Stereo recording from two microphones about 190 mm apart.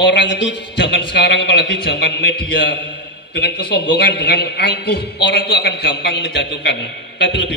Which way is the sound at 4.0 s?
60° left (ahead or behind).